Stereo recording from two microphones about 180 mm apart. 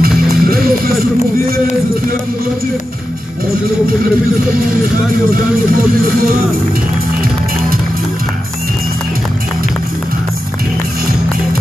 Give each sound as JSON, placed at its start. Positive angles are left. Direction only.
{"t": 0.3, "sound": "music", "side_deg": -55}
{"t": 4.9, "sound": "speech", "side_deg": -50}